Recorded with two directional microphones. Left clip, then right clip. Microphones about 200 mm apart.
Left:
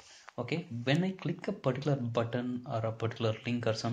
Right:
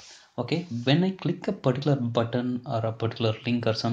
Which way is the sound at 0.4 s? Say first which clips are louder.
Right 7 dB; 25° right (ahead or behind).